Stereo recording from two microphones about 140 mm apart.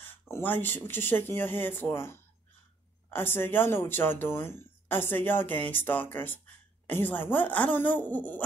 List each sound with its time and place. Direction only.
0.3 s speech: 15° left (ahead or behind)